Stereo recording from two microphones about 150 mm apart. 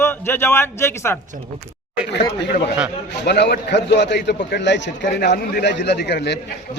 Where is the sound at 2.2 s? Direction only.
90° left.